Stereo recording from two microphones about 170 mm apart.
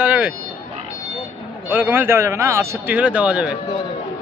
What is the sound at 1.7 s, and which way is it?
Speech, 10° right (ahead or behind).